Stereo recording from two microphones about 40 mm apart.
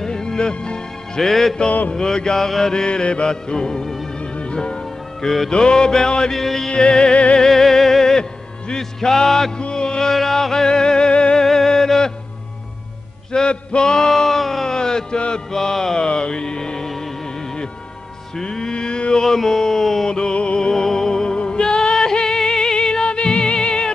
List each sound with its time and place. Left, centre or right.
0.0 s music: centre
1.9 s music: centre
4.2 s music: left
6.3 s music: centre
6.7 s music: left
7.3 s music: centre
9.6 s music: left
10.1 s music: centre; by 11.4 s left
11.4 s a sound: centre
13.3 s a sound: left
15.5 s music: centre
19.2 s a sound: centre
20.1 s music: left